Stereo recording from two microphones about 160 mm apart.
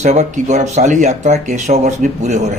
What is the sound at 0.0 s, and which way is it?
Speech, 45° right (ahead or behind).